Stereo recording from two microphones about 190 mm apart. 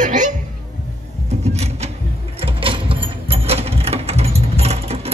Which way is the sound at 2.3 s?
30° right (ahead or behind).